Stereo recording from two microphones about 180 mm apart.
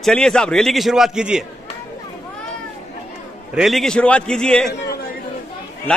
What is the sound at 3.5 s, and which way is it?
A man's voice, centre (ahead or behind).